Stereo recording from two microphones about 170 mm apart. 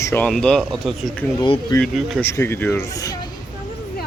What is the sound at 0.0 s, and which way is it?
Speech, 15° left (ahead or behind).